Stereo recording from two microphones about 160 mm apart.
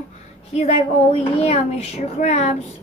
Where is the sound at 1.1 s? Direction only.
40° left (ahead or behind).